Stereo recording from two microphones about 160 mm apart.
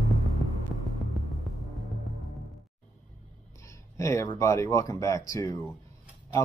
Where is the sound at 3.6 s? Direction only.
20° left (ahead or behind).